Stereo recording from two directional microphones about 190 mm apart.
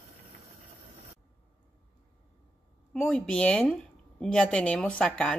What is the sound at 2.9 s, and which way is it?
A woman's voice, 5° left (ahead or behind).